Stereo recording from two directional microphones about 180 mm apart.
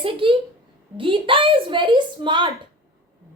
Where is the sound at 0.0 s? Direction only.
30° right (ahead or behind).